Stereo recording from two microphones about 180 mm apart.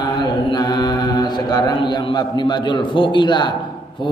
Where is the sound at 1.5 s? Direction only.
25° left (ahead or behind).